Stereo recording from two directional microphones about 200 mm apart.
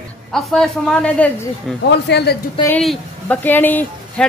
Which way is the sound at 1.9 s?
55° left (ahead or behind).